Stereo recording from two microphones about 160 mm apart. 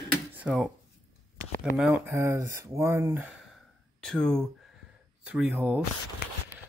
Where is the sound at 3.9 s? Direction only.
5° left (ahead or behind).